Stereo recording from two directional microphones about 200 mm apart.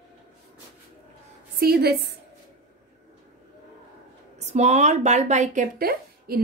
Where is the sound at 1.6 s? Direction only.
50° right (ahead or behind).